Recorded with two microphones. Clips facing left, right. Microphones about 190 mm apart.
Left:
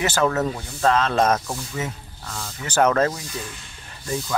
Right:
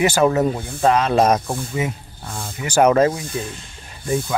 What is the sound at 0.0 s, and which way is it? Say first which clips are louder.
Speech: right 5 dB; 10° right (ahead or behind).